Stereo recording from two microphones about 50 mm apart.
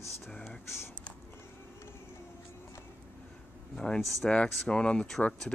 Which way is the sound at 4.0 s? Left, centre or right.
Centre.